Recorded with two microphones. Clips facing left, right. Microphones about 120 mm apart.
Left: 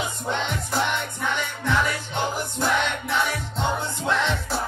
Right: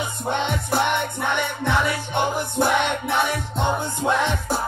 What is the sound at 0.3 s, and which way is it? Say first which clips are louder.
Music: right 5 dB; 55° right (ahead or behind).